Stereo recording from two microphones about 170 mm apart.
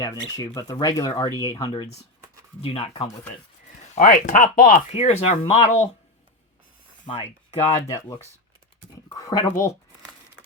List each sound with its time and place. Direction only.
0.0 s speech: 20° left (ahead or behind)
2.6 s speech: 35° left (ahead or behind)
3.9 s speech: 45° left (ahead or behind)
7.0 s speech: 35° left (ahead or behind)
7.9 s speech: 20° left (ahead or behind)